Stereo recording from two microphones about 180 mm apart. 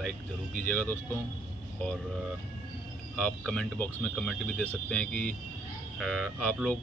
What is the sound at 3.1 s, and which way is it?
Speech, 5° left (ahead or behind).